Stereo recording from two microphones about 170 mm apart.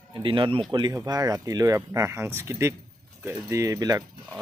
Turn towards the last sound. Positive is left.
turn(degrees=-20)  # may be behind; listen again after turning